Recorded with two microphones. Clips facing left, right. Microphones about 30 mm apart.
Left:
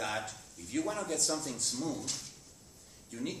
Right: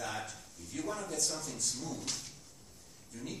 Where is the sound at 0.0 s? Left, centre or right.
Left.